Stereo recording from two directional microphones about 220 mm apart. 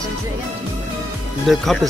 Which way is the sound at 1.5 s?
Centre (ahead or behind).